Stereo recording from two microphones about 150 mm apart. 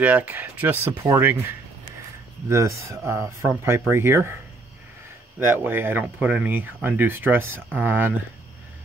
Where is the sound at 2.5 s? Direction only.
20° right (ahead or behind).